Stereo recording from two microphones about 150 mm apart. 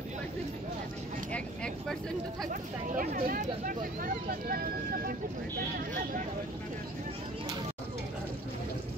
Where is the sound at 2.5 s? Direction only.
70° right (ahead or behind).